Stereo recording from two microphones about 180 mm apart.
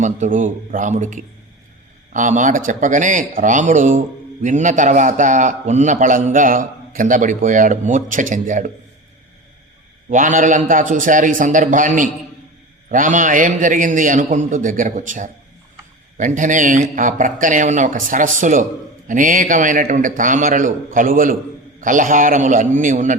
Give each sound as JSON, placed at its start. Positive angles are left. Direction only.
{"t": 0.0, "sound": "a man's voice", "side_deg": -45}
{"t": 10.1, "sound": "a man's voice", "side_deg": -45}